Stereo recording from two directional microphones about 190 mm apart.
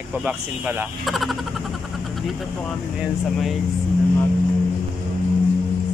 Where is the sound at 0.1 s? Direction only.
5° right (ahead or behind).